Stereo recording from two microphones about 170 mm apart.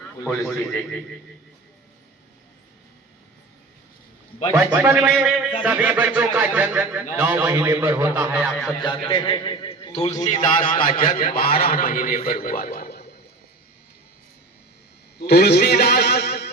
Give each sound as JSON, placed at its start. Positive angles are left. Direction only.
{"t": 0.3, "sound": "a man's voice", "side_deg": 0}
{"t": 4.5, "sound": "speech", "side_deg": -15}
{"t": 9.0, "sound": "a man's voice", "side_deg": 30}
{"t": 10.2, "sound": "a man's voice", "side_deg": 50}
{"t": 15.2, "sound": "a man's voice", "side_deg": 70}